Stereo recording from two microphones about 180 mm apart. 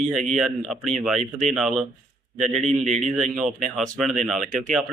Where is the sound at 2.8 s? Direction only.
40° right (ahead or behind).